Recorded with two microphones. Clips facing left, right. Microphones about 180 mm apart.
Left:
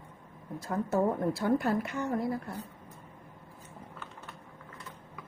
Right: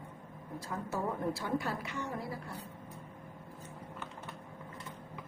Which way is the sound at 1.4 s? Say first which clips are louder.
Left 8 dB; 50° left (ahead or behind).